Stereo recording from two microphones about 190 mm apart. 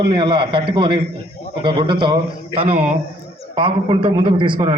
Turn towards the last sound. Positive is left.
turn(degrees=-25)  # may be behind; listen again after turning